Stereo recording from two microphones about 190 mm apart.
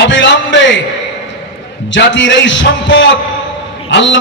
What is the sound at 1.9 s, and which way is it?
A man's voice, 75° left (ahead or behind).